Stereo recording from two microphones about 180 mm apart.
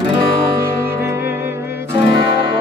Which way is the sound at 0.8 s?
15° right (ahead or behind).